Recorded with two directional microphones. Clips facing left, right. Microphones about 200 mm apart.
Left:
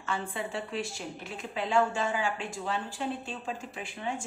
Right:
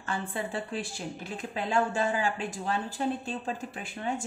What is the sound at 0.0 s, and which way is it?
A woman's voice, 40° right (ahead or behind).